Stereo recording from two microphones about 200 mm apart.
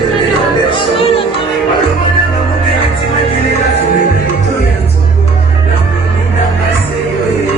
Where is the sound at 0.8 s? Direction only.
25° left (ahead or behind).